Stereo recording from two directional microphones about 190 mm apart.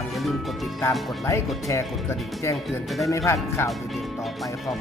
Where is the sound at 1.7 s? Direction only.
15° left (ahead or behind).